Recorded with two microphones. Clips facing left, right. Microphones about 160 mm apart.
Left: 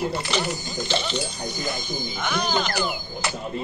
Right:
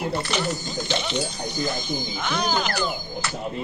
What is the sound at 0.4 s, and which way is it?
Speech, 10° left (ahead or behind).